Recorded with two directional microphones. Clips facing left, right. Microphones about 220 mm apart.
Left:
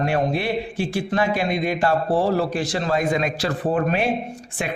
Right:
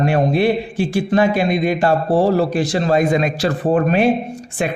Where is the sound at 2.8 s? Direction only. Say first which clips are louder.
Right 6 dB; 20° right (ahead or behind).